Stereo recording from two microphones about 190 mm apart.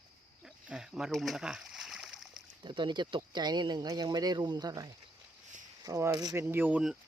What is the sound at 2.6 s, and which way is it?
Speech, 25° right (ahead or behind).